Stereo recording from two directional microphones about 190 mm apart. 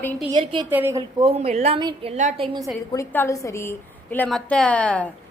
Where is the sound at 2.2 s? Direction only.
35° right (ahead or behind).